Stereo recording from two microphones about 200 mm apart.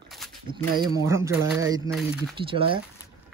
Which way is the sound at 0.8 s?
15° right (ahead or behind).